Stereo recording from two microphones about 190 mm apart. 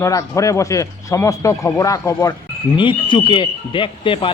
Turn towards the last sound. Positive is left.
turn(degrees=25)  # may be behind; listen again after turning